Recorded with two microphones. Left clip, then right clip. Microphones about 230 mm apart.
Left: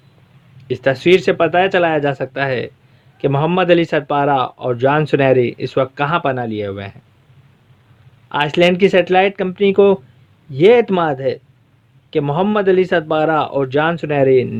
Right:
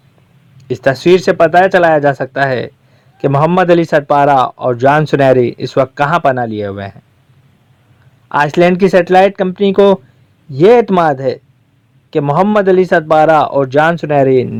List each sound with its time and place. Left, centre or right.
0.6 s a man's voice: right
8.3 s a man's voice: centre